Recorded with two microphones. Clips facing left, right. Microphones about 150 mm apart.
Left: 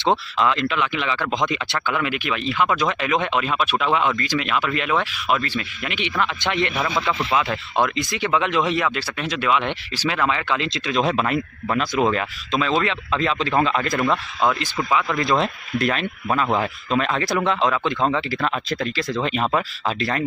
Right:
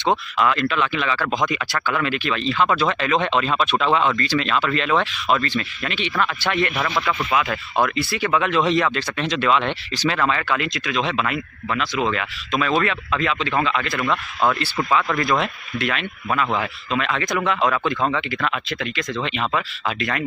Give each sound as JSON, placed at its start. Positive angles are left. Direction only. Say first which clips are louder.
{"t": 0.4, "sound": "speech", "louder": "right 1 dB", "side_deg": 20}
{"t": 11.0, "sound": "speech", "louder": "left 3 dB", "side_deg": 40}
{"t": 14.0, "sound": "speech", "louder": "right 2 dB", "side_deg": 15}
{"t": 15.1, "sound": "speech", "louder": "left 1 dB", "side_deg": 25}
{"t": 17.6, "sound": "speech", "louder": "even", "side_deg": 25}